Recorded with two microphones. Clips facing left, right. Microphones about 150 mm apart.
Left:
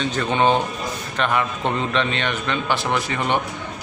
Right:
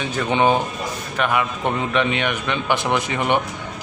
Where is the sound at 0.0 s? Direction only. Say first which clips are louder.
Right 1 dB; 10° right (ahead or behind).